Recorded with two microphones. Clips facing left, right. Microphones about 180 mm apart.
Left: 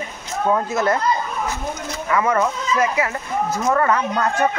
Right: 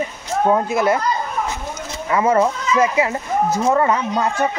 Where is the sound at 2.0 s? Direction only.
25° right (ahead or behind).